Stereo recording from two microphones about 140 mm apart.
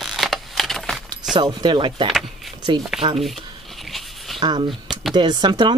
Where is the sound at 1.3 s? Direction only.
30° right (ahead or behind).